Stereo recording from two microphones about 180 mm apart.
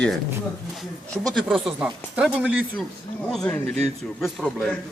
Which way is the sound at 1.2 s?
Centre (ahead or behind).